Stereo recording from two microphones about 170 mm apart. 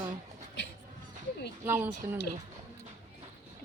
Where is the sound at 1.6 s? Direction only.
15° right (ahead or behind).